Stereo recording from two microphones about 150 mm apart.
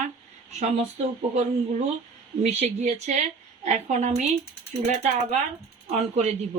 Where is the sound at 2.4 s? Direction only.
50° right (ahead or behind).